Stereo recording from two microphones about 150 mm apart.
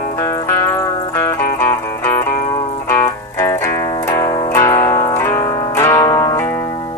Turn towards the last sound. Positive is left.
turn(degrees=25)  # may be behind; listen again after turning